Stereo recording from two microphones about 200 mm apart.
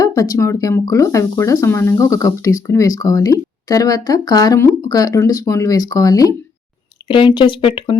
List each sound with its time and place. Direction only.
0.0 s speech: 20° left (ahead or behind)